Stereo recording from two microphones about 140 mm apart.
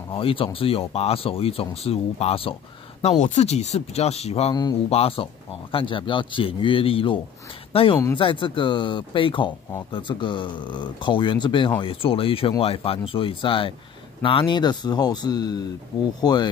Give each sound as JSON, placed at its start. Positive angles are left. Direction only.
{"t": 0.1, "sound": "speech", "side_deg": 40}
{"t": 3.0, "sound": "speech", "side_deg": 55}